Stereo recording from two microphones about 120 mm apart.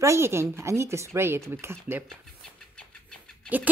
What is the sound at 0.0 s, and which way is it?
A woman's voice, 20° right (ahead or behind).